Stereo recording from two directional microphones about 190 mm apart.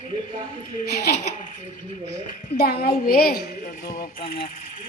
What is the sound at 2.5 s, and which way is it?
A woman's voice, 55° left (ahead or behind).